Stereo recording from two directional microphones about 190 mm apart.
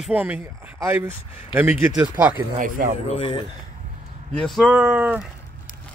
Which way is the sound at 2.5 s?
45° right (ahead or behind).